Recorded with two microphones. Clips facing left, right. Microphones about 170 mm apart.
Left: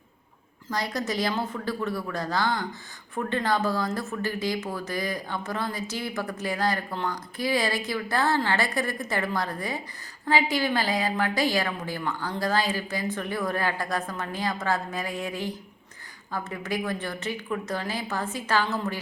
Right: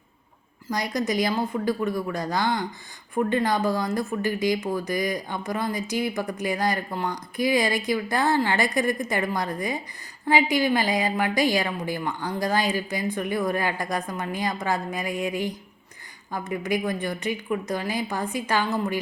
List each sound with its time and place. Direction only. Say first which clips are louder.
0.7 s speech: right 3 dB; 15° right (ahead or behind)